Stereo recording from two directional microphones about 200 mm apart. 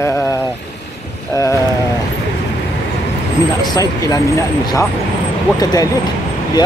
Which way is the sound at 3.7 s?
15° left (ahead or behind).